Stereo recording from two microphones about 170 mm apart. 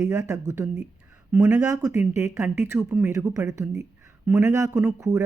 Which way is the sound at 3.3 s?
20° right (ahead or behind).